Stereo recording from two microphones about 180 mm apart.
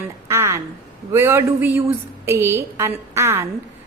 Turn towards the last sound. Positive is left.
turn(degrees=-15)  # may be behind; listen again after turning